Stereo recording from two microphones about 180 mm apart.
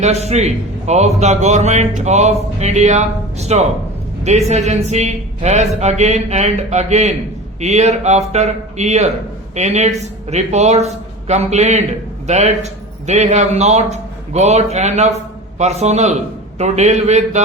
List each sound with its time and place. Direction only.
0.0 s a man's voice: 35° right (ahead or behind)